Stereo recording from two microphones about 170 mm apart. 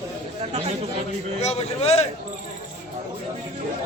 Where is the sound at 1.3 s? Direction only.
40° left (ahead or behind).